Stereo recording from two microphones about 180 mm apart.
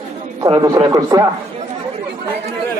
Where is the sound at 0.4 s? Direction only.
25° right (ahead or behind).